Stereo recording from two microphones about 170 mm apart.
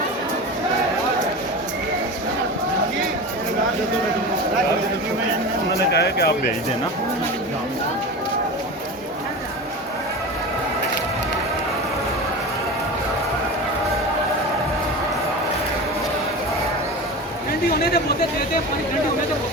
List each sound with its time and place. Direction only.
5.9 s speech: 75° left (ahead or behind)